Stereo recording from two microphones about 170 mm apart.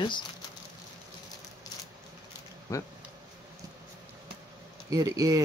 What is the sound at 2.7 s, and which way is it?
Speech, 20° left (ahead or behind).